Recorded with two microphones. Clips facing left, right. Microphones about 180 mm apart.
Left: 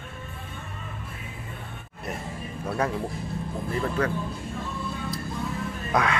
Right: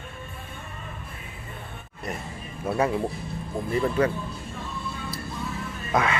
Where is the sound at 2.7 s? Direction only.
10° right (ahead or behind).